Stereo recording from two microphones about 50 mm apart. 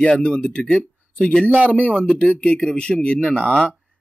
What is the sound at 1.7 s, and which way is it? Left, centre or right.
Speech, left.